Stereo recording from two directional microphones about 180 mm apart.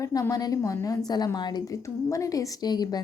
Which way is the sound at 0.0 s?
20° left (ahead or behind).